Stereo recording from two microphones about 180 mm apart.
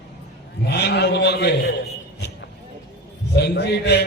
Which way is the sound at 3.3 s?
65° left (ahead or behind).